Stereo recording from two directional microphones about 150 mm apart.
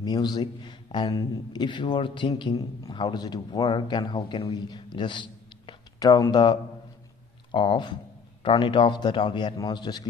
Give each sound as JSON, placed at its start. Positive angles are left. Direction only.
{"t": 0.0, "sound": "a man's voice", "side_deg": 25}
{"t": 4.9, "sound": "a sound", "side_deg": 30}
{"t": 7.5, "sound": "a man's voice", "side_deg": 35}